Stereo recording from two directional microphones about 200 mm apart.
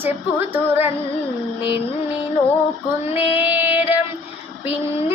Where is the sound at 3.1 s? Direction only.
10° right (ahead or behind).